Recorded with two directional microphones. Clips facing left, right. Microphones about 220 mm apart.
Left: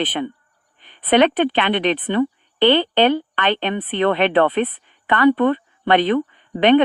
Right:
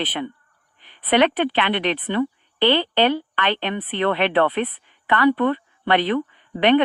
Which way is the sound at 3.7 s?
30° left (ahead or behind).